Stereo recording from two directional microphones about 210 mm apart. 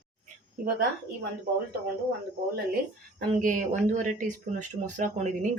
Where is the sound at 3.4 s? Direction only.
40° right (ahead or behind).